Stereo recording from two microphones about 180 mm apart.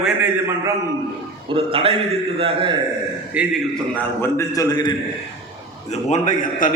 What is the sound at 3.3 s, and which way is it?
Speech, 10° right (ahead or behind).